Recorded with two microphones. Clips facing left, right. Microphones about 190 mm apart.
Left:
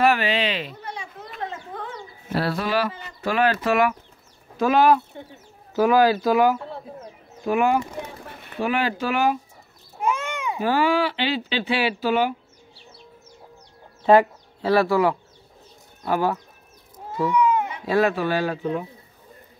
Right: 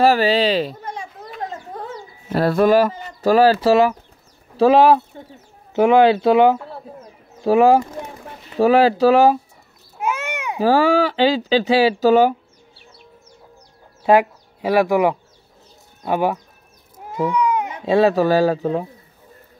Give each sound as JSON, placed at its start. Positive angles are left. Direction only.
{"t": 0.0, "sound": "children playing", "side_deg": -35}
{"t": 2.3, "sound": "speech", "side_deg": -45}
{"t": 10.0, "sound": "babbling", "side_deg": -5}
{"t": 10.6, "sound": "speech", "side_deg": -35}
{"t": 14.0, "sound": "speech", "side_deg": -10}
{"t": 17.1, "sound": "cat", "side_deg": -15}
{"t": 18.1, "sound": "speech", "side_deg": -40}